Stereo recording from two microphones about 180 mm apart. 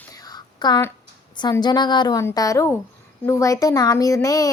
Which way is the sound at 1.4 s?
25° left (ahead or behind).